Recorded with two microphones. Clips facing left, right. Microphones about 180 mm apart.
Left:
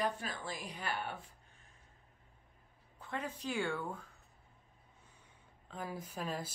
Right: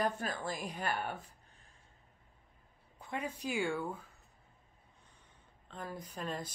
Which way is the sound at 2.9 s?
15° right (ahead or behind).